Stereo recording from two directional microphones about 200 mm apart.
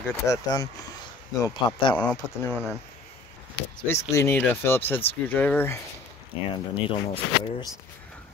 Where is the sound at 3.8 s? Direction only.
15° left (ahead or behind).